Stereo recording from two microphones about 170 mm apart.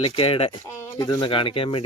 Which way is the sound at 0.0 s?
30° left (ahead or behind).